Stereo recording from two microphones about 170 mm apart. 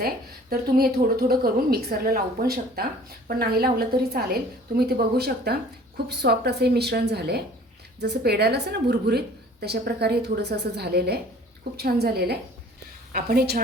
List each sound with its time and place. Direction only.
0.5 s a woman's voice: 65° right (ahead or behind)